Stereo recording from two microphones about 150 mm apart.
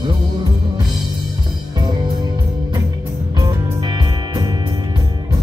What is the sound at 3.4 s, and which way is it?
Music, 30° right (ahead or behind).